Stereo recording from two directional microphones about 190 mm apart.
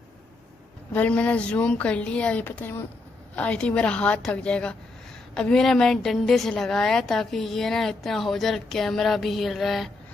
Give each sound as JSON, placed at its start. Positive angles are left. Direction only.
{"t": 0.9, "sound": "a woman's voice", "side_deg": 5}